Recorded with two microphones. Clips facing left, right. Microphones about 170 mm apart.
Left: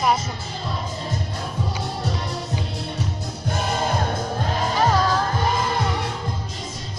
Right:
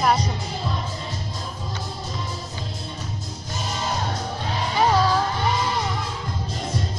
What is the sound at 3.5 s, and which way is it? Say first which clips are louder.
Music: left 6 dB; 60° left (ahead or behind).